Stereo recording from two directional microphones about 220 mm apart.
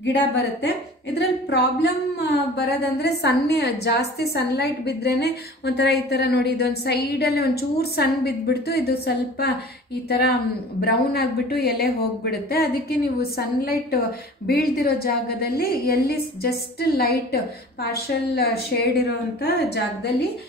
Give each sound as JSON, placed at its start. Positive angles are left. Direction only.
{"t": 0.0, "sound": "a woman's voice", "side_deg": 50}